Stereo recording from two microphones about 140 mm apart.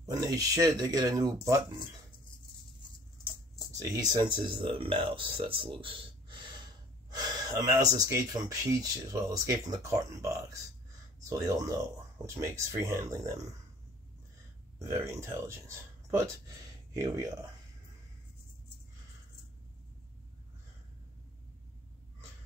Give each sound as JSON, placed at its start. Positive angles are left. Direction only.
{"t": 0.0, "sound": "speech", "side_deg": -25}
{"t": 3.9, "sound": "speech", "side_deg": -30}
{"t": 5.6, "sound": "a sound", "side_deg": -40}
{"t": 7.2, "sound": "speech", "side_deg": -25}
{"t": 14.8, "sound": "speech", "side_deg": -20}